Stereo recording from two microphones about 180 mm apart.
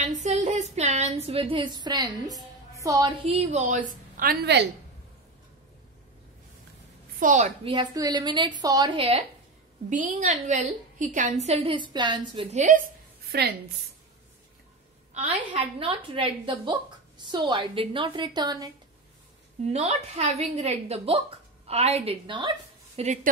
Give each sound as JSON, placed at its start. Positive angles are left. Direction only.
{"t": 0.0, "sound": "a sound", "side_deg": -40}
{"t": 2.7, "sound": "a woman's voice", "side_deg": -20}
{"t": 7.2, "sound": "a woman's voice", "side_deg": -45}
{"t": 7.7, "sound": "a woman's voice", "side_deg": -20}
{"t": 9.8, "sound": "a woman's voice", "side_deg": -45}
{"t": 12.5, "sound": "a woman's voice", "side_deg": -45}
{"t": 13.3, "sound": "a woman's voice", "side_deg": -60}
{"t": 15.5, "sound": "a woman's voice", "side_deg": -30}
{"t": 19.7, "sound": "a woman's voice", "side_deg": -35}